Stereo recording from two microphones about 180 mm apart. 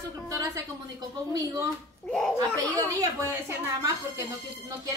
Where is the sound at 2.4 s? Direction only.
20° right (ahead or behind).